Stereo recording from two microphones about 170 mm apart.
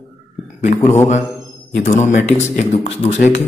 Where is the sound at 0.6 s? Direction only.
45° left (ahead or behind).